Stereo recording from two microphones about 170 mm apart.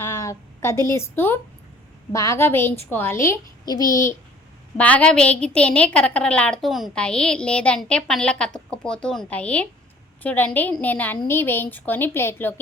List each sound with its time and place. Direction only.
0.0 s a woman's voice: 15° left (ahead or behind)
4.8 s a woman's voice: 10° left (ahead or behind)